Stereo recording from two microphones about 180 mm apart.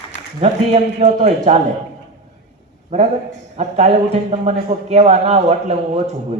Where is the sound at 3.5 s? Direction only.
40° right (ahead or behind).